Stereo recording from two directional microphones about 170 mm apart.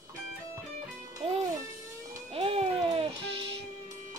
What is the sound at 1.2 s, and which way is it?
Music, 30° right (ahead or behind).